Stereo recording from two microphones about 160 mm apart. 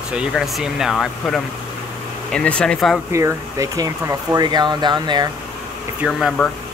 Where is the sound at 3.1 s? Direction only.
20° right (ahead or behind).